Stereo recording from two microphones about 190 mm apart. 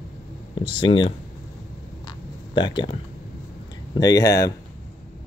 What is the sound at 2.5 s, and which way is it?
Speech, 25° left (ahead or behind).